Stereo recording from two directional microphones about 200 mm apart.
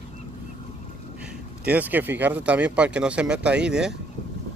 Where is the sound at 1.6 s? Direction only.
10° right (ahead or behind).